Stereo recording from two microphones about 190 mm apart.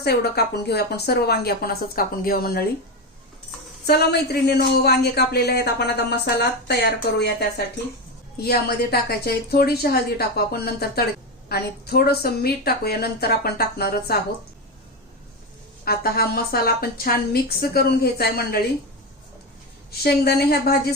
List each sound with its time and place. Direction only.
0.0 s speech: 55° left (ahead or behind)
3.8 s speech: 55° left (ahead or behind)
15.8 s a woman's voice: 55° left (ahead or behind)
20.0 s speech: 55° left (ahead or behind)